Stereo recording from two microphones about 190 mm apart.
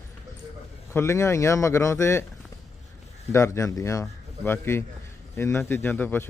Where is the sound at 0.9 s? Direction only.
15° left (ahead or behind).